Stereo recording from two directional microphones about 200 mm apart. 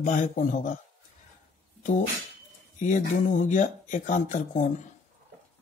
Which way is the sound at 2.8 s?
40° left (ahead or behind).